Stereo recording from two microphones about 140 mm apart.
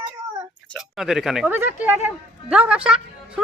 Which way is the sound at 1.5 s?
15° right (ahead or behind).